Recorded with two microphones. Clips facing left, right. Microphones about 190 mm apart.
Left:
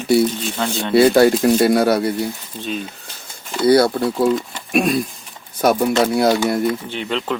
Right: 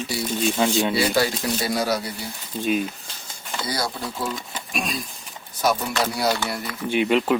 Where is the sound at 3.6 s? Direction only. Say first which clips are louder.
Left 16 dB; 60° left (ahead or behind).